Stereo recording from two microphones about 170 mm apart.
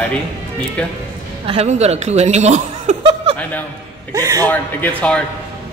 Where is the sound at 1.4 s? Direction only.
40° right (ahead or behind).